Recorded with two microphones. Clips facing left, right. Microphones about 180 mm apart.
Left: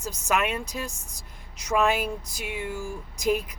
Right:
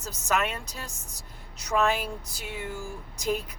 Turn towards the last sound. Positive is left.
turn(degrees=10)  # may be behind; listen again after turning